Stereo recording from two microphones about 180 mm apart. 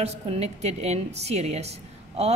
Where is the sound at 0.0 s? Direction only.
35° right (ahead or behind).